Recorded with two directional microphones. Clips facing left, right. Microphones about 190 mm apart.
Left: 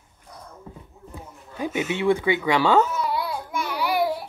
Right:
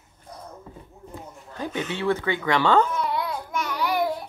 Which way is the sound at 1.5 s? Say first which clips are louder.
Left 3 dB; 10° left (ahead or behind).